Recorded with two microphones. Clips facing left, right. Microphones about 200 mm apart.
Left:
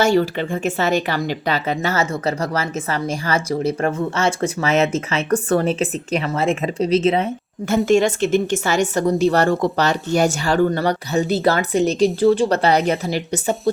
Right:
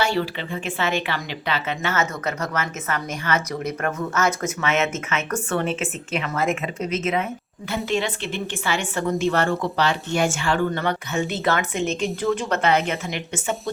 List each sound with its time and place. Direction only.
0.0 s speech: 45° left (ahead or behind)
7.9 s speech: 45° left (ahead or behind)